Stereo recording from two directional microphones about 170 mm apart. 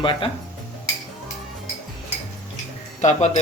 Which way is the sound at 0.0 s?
30° left (ahead or behind).